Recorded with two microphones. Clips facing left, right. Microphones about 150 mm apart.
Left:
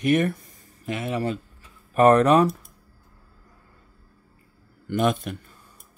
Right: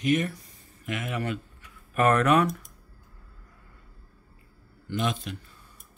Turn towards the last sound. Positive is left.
turn(degrees=50)  # may be behind; listen again after turning